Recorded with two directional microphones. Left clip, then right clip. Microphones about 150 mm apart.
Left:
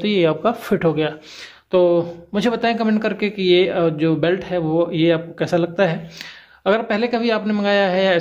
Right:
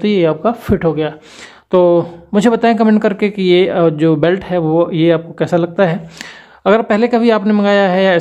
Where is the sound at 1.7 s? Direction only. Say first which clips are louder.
Right 5 dB; 40° right (ahead or behind).